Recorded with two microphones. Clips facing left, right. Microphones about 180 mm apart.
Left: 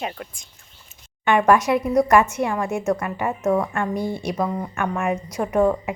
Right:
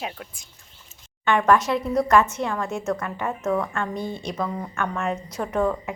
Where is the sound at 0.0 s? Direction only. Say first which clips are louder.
Left 3 dB; centre (ahead or behind).